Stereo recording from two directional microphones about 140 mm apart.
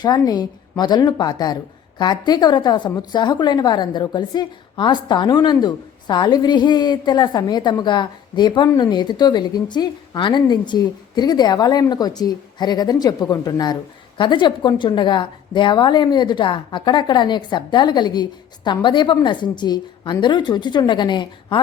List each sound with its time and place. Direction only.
0.0 s a woman's voice: 30° left (ahead or behind)